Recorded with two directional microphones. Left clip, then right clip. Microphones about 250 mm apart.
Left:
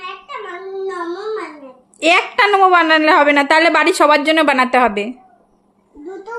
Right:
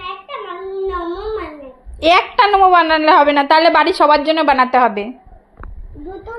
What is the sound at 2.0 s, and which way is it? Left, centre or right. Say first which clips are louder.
A woman's voice: right 1 dB; centre.